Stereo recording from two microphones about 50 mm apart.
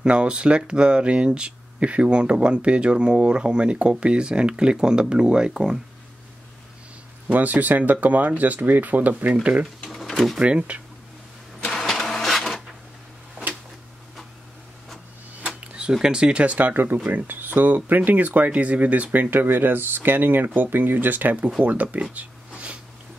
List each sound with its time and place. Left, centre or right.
0.0 s speech: right
7.2 s speech: right
9.8 s a sound: centre
10.4 s speech: right
11.7 s printer: centre
15.9 s speech: centre
16.5 s speech: right
19.3 s speech: right
22.1 s a sound: right